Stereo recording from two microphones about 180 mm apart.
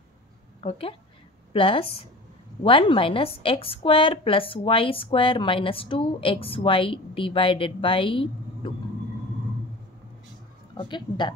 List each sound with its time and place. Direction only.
0.6 s a woman's voice: 30° left (ahead or behind)
10.8 s a woman's voice: 25° left (ahead or behind)